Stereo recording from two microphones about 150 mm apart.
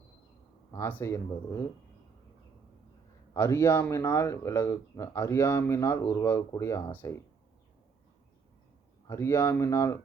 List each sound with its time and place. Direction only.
0.7 s speech: 15° left (ahead or behind)
3.3 s a man's voice: 15° left (ahead or behind)
9.0 s speech: 20° left (ahead or behind)